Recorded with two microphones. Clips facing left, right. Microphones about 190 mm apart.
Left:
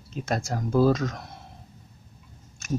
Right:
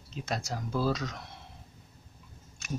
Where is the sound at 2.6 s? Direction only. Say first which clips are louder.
Left 8 dB; 45° left (ahead or behind).